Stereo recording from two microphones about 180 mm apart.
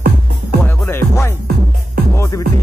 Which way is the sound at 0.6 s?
10° left (ahead or behind).